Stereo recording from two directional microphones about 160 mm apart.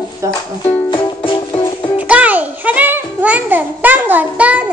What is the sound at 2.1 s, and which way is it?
Music, 10° right (ahead or behind).